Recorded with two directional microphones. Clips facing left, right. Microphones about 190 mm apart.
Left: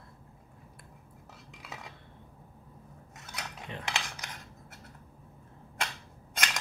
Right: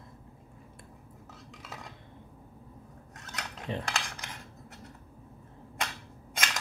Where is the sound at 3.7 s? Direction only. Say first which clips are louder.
Right 10 dB; 35° right (ahead or behind).